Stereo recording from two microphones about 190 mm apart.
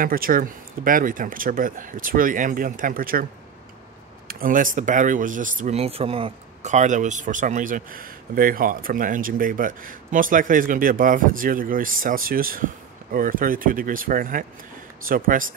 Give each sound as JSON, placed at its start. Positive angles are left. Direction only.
{"t": 0.0, "sound": "speech", "side_deg": -50}
{"t": 4.3, "sound": "speech", "side_deg": -45}